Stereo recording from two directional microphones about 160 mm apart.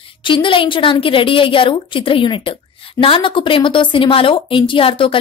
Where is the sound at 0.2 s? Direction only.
30° left (ahead or behind).